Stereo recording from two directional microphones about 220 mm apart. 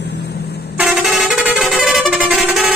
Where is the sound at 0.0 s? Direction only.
50° left (ahead or behind).